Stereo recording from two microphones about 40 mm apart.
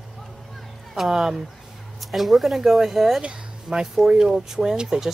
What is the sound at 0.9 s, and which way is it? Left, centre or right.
Speech, centre.